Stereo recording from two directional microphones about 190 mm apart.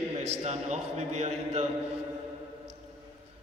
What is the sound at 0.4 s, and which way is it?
A man's voice, 35° right (ahead or behind).